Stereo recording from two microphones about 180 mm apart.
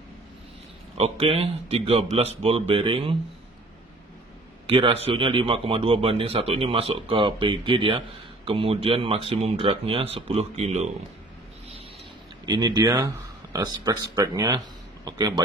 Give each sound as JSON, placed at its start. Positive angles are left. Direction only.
{"t": 0.9, "sound": "speech", "side_deg": -35}
{"t": 4.6, "sound": "speech", "side_deg": -30}
{"t": 12.4, "sound": "speech", "side_deg": -20}